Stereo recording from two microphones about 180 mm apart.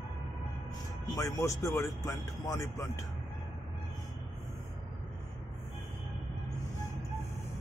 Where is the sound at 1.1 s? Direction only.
15° left (ahead or behind).